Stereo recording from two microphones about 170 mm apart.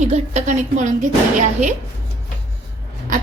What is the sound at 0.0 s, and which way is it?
Speech, 40° right (ahead or behind).